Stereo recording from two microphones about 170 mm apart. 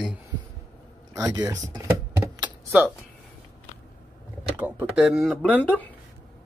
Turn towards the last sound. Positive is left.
turn(degrees=10)  # may be behind; listen again after turning